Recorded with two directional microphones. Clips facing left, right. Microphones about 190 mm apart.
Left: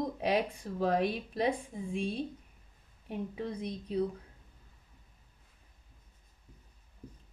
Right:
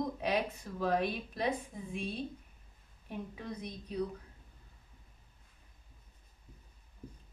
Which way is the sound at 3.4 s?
30° left (ahead or behind).